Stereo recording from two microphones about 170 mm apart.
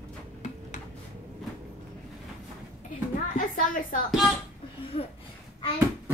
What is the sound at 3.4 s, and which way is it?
Speech, 55° left (ahead or behind).